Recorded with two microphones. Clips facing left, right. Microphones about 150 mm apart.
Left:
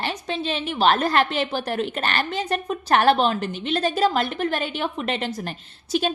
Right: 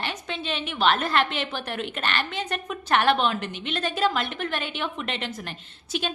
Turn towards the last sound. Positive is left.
turn(degrees=40)  # may be behind; listen again after turning